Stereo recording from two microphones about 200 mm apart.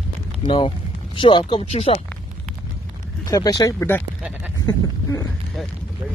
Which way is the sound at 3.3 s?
20° left (ahead or behind).